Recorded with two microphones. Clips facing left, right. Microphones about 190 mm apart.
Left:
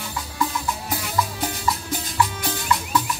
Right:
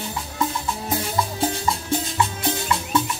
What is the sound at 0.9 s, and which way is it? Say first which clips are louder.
Music: right 2 dB; 30° right (ahead or behind).